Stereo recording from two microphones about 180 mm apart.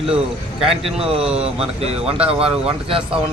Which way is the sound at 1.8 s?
35° right (ahead or behind).